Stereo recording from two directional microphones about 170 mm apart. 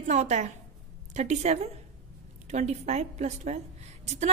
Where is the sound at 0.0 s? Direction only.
45° right (ahead or behind).